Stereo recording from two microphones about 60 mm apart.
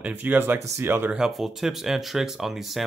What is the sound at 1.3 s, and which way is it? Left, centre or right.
Speech, centre.